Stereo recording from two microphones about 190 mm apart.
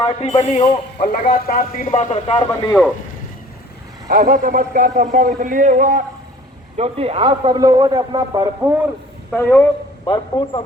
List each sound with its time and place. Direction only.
0.0 s a man's voice: 30° left (ahead or behind)
1.2 s a man's voice: 45° left (ahead or behind); by 2.8 s 15° left (ahead or behind)
4.1 s a man's voice: 45° right (ahead or behind); by 8.7 s 20° right (ahead or behind)
9.3 s a man's voice: 10° left (ahead or behind)
10.1 s a man's voice: 25° left (ahead or behind)